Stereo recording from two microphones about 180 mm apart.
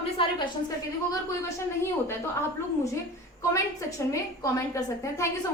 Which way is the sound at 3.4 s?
15° left (ahead or behind).